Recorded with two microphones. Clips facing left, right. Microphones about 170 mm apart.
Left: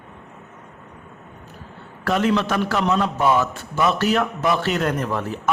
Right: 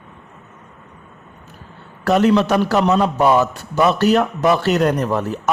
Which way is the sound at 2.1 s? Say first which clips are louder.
Right 6 dB; 40° right (ahead or behind).